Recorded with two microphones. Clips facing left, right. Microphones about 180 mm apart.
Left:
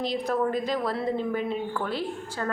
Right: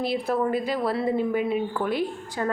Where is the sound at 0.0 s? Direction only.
10° right (ahead or behind).